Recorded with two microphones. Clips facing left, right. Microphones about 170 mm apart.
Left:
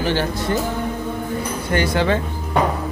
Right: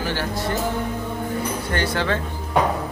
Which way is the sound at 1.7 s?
15° left (ahead or behind).